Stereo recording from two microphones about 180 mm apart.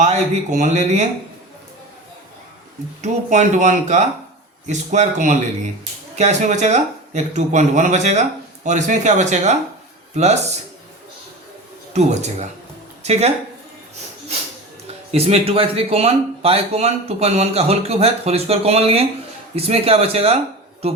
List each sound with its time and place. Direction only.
0.0 s speech: 40° right (ahead or behind)
3.0 s speech: 40° right (ahead or behind)
11.9 s a woman's voice: 40° right (ahead or behind)
15.1 s a man's voice: 35° right (ahead or behind)